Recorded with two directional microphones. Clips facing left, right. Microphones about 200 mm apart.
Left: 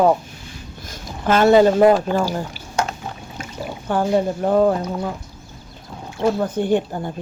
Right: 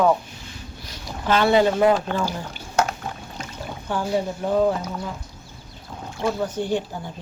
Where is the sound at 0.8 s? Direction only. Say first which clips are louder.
Left 3 dB; 45° left (ahead or behind).